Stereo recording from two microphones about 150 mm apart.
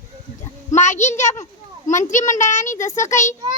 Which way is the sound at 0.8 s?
50° left (ahead or behind).